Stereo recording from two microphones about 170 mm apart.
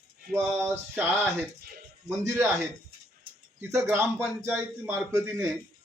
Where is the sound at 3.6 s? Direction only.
15° right (ahead or behind).